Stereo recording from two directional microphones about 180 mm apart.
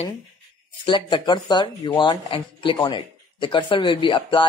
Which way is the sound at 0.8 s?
25° left (ahead or behind).